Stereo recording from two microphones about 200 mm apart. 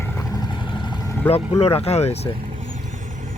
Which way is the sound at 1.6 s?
30° left (ahead or behind).